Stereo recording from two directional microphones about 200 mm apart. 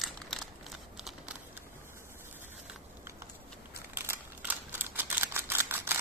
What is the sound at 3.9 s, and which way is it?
Camera, 10° right (ahead or behind).